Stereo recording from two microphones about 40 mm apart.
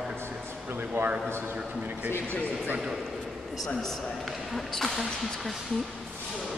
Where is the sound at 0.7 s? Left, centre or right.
Right.